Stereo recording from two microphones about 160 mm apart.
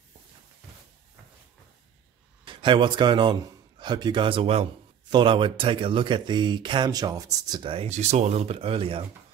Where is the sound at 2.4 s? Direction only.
30° right (ahead or behind).